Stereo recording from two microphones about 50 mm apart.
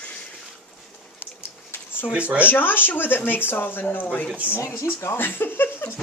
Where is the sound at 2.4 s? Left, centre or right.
Left.